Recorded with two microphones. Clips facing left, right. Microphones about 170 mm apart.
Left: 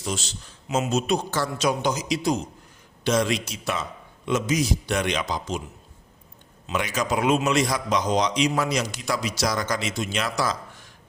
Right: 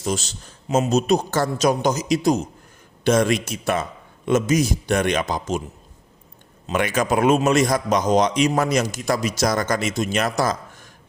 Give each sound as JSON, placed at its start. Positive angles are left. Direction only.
{"t": 0.0, "sound": "a man's voice", "side_deg": -45}
{"t": 6.7, "sound": "a man's voice", "side_deg": -55}